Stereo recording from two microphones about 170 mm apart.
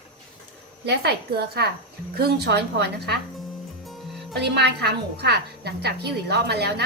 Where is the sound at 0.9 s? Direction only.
75° right (ahead or behind).